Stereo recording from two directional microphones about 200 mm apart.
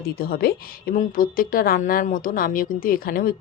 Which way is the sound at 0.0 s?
50° left (ahead or behind).